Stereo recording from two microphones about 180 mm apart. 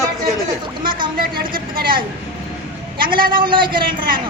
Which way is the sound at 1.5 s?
55° right (ahead or behind).